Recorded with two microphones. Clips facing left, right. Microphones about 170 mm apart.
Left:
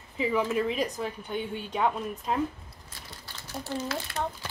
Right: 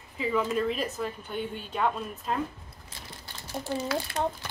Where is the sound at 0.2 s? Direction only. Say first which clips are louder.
Left 1 dB; 15° left (ahead or behind).